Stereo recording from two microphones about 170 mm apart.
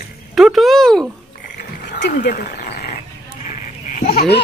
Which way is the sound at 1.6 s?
60° left (ahead or behind).